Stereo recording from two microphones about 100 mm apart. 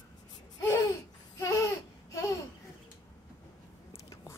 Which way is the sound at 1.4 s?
30° left (ahead or behind).